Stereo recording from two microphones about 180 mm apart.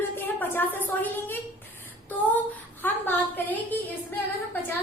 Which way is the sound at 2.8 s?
10° left (ahead or behind).